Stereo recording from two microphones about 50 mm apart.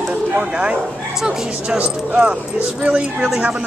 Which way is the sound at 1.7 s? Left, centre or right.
Right.